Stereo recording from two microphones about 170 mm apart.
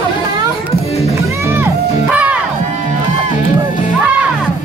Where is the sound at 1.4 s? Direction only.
15° right (ahead or behind).